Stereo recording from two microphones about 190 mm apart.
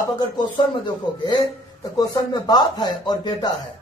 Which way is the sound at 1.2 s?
20° left (ahead or behind).